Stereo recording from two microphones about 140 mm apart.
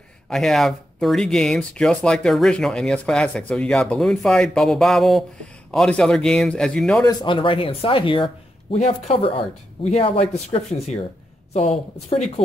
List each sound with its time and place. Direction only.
0.3 s speech: centre (ahead or behind)
7.1 s speech: 35° left (ahead or behind)
8.7 s a woman's voice: 55° left (ahead or behind)
11.5 s a woman's voice: 45° left (ahead or behind)